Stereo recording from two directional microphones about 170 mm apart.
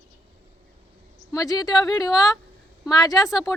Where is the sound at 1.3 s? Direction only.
20° left (ahead or behind).